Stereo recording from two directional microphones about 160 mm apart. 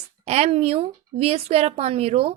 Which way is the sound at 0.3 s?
40° right (ahead or behind).